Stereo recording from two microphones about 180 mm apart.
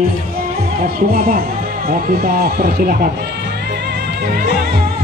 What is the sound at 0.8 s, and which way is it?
Speech, 55° right (ahead or behind).